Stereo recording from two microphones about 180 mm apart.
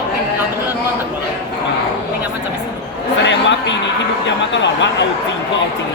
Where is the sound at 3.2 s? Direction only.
85° left.